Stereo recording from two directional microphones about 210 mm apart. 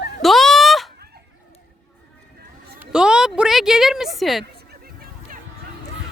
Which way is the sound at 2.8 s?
5° right (ahead or behind).